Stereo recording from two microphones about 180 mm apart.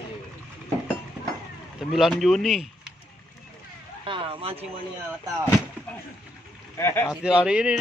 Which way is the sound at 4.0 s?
30° right (ahead or behind).